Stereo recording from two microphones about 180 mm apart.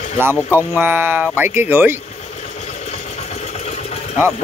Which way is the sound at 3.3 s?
35° left (ahead or behind).